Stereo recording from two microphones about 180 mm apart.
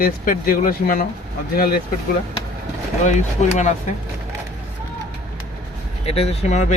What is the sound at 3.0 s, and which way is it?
Speech, 40° left (ahead or behind).